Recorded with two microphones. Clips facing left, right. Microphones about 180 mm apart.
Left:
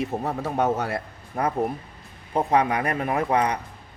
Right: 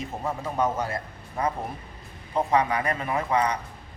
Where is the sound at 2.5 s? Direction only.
60° left (ahead or behind).